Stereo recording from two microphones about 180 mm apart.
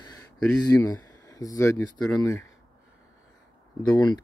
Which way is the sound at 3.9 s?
25° left (ahead or behind).